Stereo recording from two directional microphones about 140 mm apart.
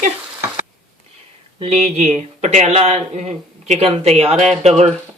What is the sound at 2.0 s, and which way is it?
Speech, 55° right (ahead or behind).